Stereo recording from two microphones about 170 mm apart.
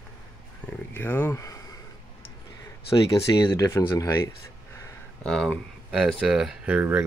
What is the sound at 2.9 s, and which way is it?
Speech, 20° left (ahead or behind).